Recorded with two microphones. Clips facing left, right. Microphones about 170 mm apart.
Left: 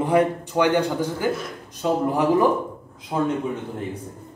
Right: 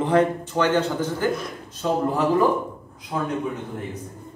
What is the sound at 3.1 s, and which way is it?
Speech, 25° left (ahead or behind).